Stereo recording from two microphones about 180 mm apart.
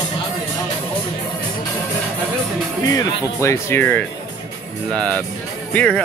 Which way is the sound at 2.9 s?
20° left (ahead or behind).